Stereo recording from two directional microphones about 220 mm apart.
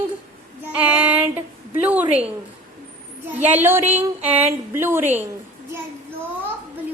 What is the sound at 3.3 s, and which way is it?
A woman's voice, 10° right (ahead or behind).